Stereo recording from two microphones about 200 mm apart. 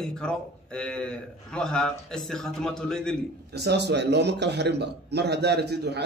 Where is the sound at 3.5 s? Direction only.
55° right (ahead or behind).